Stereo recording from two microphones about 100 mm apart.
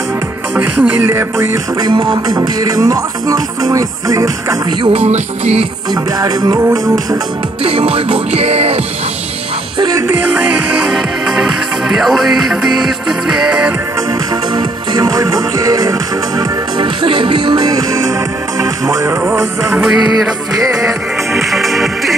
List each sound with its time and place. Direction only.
0.6 s music: 20° right (ahead or behind)
1.8 s music: 45° right (ahead or behind)
4.8 s music: 90° right
6.1 s music: 40° right (ahead or behind)
7.6 s music: 70° right (ahead or behind); by 8.8 s 90° right
9.9 s music: 25° right (ahead or behind)
10.9 s music: 5° right (ahead or behind)
14.5 s music: 40° right (ahead or behind)
21.3 s music: centre (ahead or behind)